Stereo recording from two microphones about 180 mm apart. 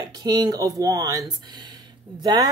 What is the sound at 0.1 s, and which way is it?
Speech, 20° right (ahead or behind).